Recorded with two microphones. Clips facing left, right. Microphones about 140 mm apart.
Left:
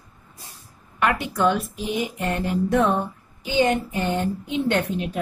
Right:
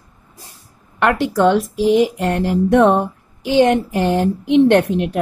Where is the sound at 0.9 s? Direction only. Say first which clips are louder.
Right 7 dB; 75° right (ahead or behind).